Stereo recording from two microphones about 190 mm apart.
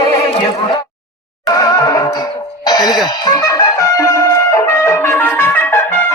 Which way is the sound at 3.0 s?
20° left (ahead or behind).